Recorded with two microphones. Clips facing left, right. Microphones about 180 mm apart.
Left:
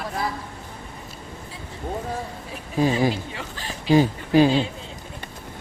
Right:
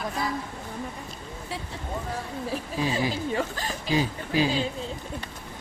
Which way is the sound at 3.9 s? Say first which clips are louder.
Left 9 dB; 50° left (ahead or behind).